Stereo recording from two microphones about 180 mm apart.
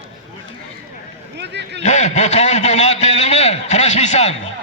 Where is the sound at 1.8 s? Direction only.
40° left (ahead or behind).